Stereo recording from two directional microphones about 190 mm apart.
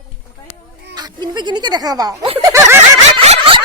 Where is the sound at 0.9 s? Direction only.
20° right (ahead or behind).